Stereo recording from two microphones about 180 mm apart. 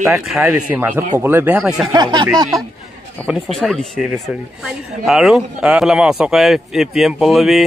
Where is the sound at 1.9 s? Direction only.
25° right (ahead or behind).